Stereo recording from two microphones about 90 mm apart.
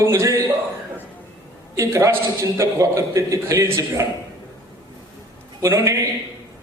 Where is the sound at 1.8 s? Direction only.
35° right (ahead or behind).